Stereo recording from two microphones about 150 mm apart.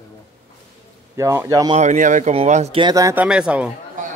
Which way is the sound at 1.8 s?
55° right (ahead or behind).